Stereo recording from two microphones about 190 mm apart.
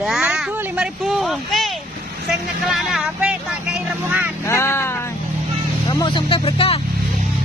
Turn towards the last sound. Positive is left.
turn(degrees=30)  # may be behind; listen again after turning